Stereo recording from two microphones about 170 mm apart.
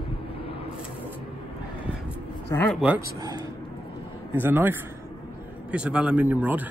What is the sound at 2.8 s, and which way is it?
Speech, 10° right (ahead or behind).